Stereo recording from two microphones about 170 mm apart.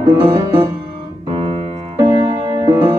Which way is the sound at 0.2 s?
15° right (ahead or behind).